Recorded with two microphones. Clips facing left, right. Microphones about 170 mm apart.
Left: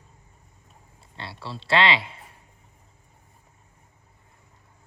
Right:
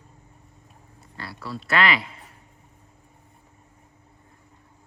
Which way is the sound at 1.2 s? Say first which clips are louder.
Right 2 dB; 25° left (ahead or behind).